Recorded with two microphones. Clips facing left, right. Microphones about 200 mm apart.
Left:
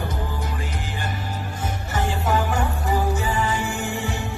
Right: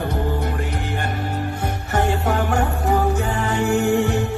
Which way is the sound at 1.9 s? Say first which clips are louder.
Right 3 dB; 60° right (ahead or behind).